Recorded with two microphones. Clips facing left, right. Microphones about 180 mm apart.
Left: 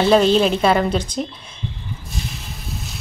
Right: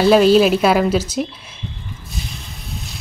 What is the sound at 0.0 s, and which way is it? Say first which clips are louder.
A woman's voice: right 3 dB; 5° right (ahead or behind).